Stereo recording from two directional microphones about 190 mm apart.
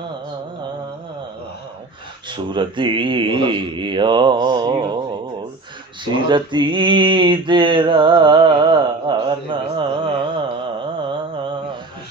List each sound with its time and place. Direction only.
2.2 s speech: 25° right (ahead or behind)
6.2 s mantra: 25° right (ahead or behind)
11.1 s a sound: 25° right (ahead or behind)